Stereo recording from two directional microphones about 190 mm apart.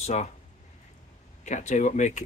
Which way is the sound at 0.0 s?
35° left (ahead or behind).